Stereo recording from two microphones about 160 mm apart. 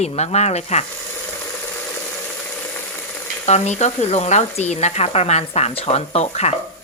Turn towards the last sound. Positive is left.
turn(degrees=40)  # may be behind; listen again after turning